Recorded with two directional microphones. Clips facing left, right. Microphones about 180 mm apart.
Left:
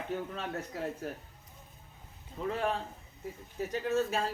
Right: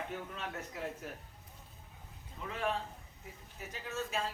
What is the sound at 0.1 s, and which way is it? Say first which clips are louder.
A man's voice: left 6 dB; 35° left (ahead or behind).